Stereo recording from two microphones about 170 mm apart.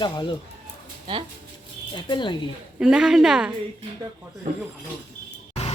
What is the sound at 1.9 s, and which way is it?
Speech, 25° left (ahead or behind).